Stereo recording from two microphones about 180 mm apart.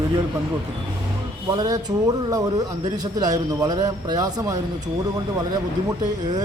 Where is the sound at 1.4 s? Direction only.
20° right (ahead or behind).